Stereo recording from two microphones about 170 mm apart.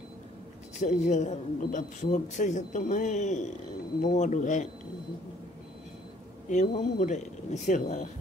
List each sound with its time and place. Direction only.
0.7 s a man's voice: 45° left (ahead or behind)
6.5 s a man's voice: 45° left (ahead or behind)